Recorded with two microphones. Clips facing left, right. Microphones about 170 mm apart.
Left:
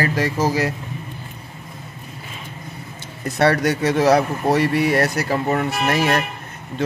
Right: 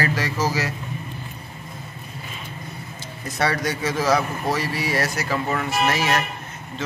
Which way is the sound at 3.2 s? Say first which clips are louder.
Left 6 dB; 60° left (ahead or behind).